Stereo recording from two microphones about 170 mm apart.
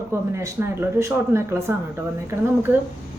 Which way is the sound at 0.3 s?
15° right (ahead or behind).